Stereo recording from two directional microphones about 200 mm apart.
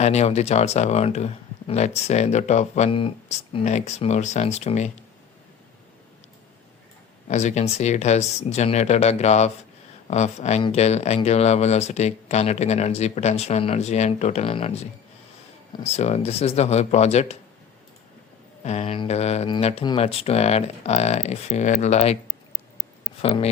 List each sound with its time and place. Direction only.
0.0 s speech: 35° left (ahead or behind)
7.3 s speech: 35° left (ahead or behind)
18.6 s speech: 35° left (ahead or behind)
23.2 s speech: 30° left (ahead or behind)